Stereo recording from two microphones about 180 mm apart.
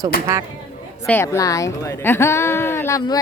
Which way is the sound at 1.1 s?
15° left (ahead or behind).